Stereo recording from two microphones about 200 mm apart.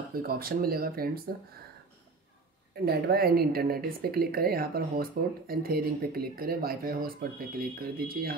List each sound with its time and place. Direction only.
0.1 s speech: 50° right (ahead or behind)
2.7 s speech: 50° right (ahead or behind)